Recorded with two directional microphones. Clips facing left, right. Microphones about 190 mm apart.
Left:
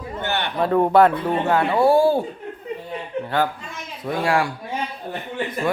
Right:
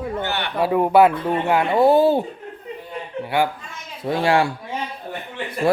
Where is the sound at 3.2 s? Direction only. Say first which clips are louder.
Right 2 dB; 10° right (ahead or behind).